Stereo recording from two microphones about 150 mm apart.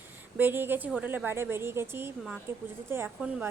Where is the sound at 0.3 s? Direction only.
15° right (ahead or behind).